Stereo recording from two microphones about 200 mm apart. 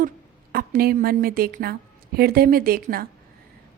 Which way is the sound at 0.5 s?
45° right (ahead or behind).